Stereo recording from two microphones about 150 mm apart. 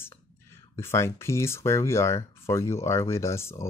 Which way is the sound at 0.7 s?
15° left (ahead or behind).